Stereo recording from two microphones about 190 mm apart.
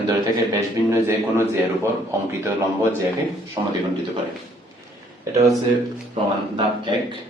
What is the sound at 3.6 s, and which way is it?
Speech, 25° right (ahead or behind).